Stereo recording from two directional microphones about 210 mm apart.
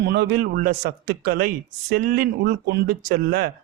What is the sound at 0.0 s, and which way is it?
A man's voice, 50° right (ahead or behind).